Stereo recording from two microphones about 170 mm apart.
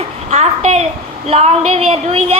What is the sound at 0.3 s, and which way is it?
A child's voice, 40° right (ahead or behind).